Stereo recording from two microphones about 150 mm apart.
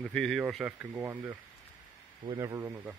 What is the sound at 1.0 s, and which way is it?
Speech, 15° right (ahead or behind).